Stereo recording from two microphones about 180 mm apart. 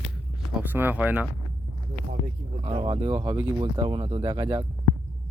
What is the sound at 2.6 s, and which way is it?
Speech, 30° right (ahead or behind).